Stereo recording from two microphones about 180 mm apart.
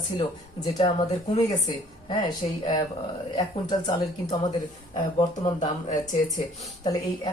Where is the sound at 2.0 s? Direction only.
25° left (ahead or behind).